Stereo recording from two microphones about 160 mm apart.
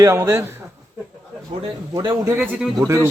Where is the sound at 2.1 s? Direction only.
15° right (ahead or behind).